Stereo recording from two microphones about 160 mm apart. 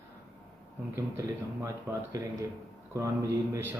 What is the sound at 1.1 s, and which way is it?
Speech, 15° right (ahead or behind).